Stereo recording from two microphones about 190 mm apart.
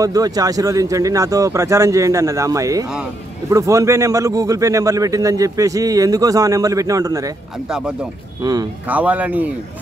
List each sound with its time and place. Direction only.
0.0 s speech: 20° right (ahead or behind)
8.4 s speech: 20° right (ahead or behind)
8.8 s speech: 10° right (ahead or behind)